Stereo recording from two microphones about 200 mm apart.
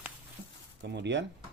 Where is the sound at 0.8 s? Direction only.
60° right (ahead or behind).